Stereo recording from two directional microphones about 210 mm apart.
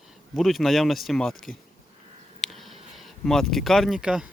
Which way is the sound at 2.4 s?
Centre (ahead or behind).